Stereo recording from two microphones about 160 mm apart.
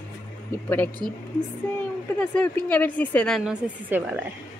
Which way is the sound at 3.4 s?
10° right (ahead or behind).